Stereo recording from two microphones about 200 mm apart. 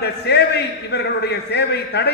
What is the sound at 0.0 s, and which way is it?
A man's voice, 55° left (ahead or behind).